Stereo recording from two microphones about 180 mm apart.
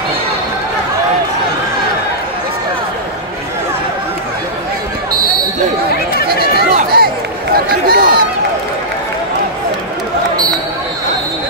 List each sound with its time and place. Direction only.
6.7 s run: 55° right (ahead or behind)